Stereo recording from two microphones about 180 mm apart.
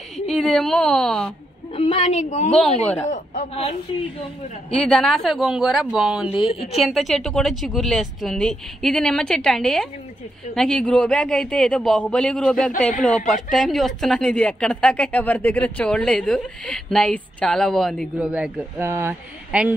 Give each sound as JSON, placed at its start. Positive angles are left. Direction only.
{"t": 0.3, "sound": "a woman's voice", "side_deg": 5}
{"t": 1.8, "sound": "a woman's voice", "side_deg": 35}
{"t": 2.8, "sound": "speech", "side_deg": 10}
{"t": 3.1, "sound": "a woman's voice", "side_deg": 35}
{"t": 4.7, "sound": "a woman's voice", "side_deg": 5}
{"t": 6.5, "sound": "a woman's voice", "side_deg": 35}
{"t": 6.8, "sound": "a woman's voice", "side_deg": 0}